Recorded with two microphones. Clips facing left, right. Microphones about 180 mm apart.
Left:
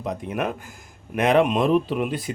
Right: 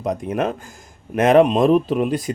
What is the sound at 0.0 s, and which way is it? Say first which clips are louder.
Speech: right 5 dB; 45° right (ahead or behind).